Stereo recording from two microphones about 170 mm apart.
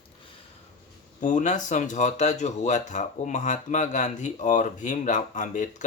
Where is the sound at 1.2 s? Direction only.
45° left (ahead or behind).